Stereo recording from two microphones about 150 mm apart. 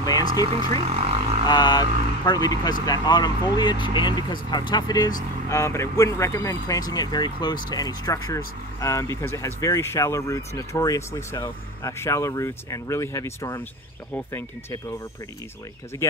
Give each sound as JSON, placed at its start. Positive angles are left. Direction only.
{"t": 0.0, "sound": "speech", "side_deg": 25}
{"t": 0.7, "sound": "speech", "side_deg": -40}
{"t": 1.4, "sound": "speech", "side_deg": 30}